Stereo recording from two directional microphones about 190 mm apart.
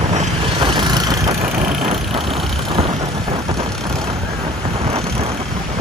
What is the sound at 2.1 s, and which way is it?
Vehicle, centre (ahead or behind).